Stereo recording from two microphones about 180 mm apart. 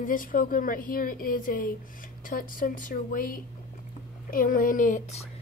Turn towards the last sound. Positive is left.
turn(degrees=45)  # may be behind; listen again after turning